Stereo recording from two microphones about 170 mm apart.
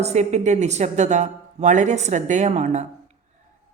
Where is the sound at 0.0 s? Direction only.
40° right (ahead or behind).